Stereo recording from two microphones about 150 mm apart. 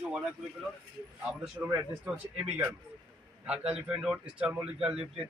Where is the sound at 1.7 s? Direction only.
5° right (ahead or behind).